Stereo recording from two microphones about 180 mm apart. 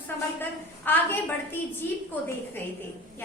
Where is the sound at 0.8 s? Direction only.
10° left (ahead or behind).